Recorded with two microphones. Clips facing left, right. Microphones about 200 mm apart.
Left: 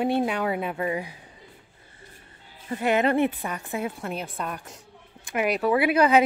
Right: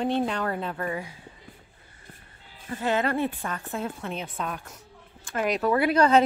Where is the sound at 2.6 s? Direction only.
20° left (ahead or behind).